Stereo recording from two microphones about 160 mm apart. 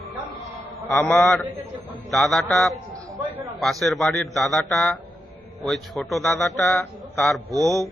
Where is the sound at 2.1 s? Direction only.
Centre (ahead or behind).